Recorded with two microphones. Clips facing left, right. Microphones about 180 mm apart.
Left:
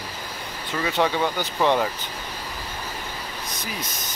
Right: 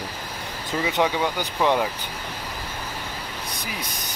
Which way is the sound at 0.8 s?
15° right (ahead or behind).